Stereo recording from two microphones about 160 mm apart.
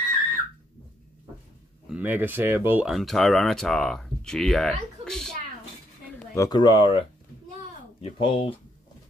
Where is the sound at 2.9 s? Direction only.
Centre (ahead or behind).